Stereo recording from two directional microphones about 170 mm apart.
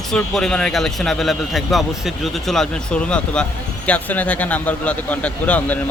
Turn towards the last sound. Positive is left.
turn(degrees=10)  # may be behind; listen again after turning